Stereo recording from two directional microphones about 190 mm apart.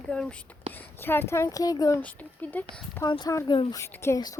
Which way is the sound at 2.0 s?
10° left (ahead or behind).